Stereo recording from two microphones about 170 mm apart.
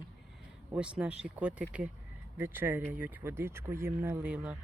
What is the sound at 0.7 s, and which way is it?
Speech, 5° right (ahead or behind).